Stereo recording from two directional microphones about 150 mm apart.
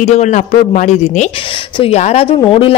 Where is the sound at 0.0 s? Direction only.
50° left (ahead or behind).